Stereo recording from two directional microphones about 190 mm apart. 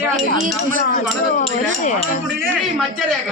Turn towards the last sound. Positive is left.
turn(degrees=0)  # may be behind; listen again after turning